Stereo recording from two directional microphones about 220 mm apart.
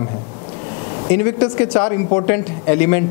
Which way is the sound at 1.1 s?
10° left (ahead or behind).